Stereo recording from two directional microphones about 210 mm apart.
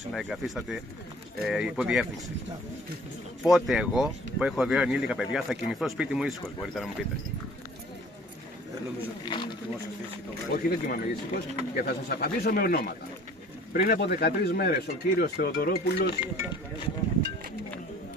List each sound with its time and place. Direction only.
0.1 s speech: centre (ahead or behind)
3.4 s speech: centre (ahead or behind)
9.2 s speech: 20° left (ahead or behind)
10.5 s speech: 45° left (ahead or behind)